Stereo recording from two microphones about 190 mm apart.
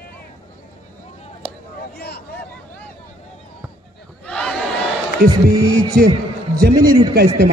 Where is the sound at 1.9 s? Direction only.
60° left (ahead or behind).